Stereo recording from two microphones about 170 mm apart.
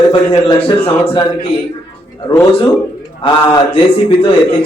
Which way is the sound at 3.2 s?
30° left (ahead or behind).